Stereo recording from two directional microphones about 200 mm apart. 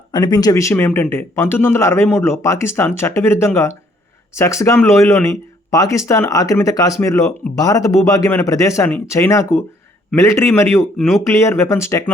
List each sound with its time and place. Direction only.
0.1 s speech: 20° left (ahead or behind)
10.9 s speech: centre (ahead or behind)
11.3 s speech: 15° left (ahead or behind)